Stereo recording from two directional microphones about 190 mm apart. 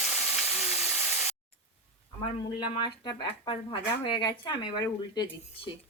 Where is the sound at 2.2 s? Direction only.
20° left (ahead or behind).